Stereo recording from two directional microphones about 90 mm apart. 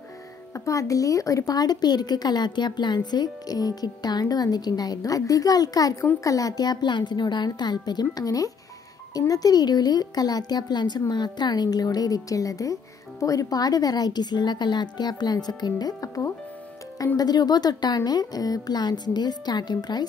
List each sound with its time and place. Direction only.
0.7 s speech: 40° left (ahead or behind)